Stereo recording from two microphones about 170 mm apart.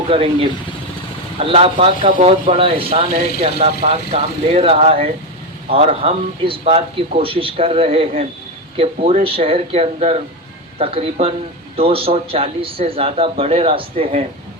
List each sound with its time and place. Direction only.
0.1 s a man's voice: 35° right (ahead or behind)